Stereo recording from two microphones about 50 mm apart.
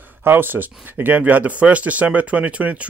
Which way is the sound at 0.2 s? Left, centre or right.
Right.